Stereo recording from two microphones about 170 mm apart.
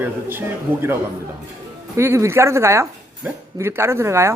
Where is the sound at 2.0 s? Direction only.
15° right (ahead or behind).